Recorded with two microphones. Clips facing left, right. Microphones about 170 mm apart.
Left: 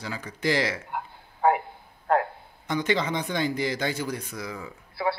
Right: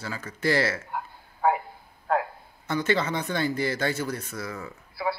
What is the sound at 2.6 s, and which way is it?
Speech, 15° left (ahead or behind).